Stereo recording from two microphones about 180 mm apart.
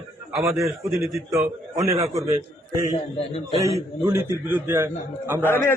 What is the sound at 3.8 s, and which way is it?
A man's voice, 15° right (ahead or behind).